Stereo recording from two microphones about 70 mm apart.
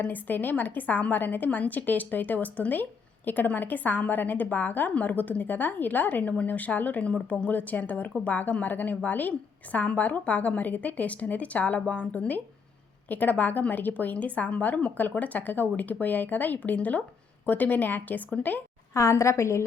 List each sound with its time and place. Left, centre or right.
0.0 s a woman's voice: left
18.9 s a woman's voice: left